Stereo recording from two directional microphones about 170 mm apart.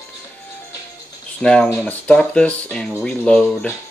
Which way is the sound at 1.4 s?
5° left (ahead or behind).